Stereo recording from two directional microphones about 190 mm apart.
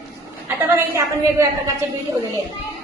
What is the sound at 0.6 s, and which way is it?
Speech, 15° right (ahead or behind).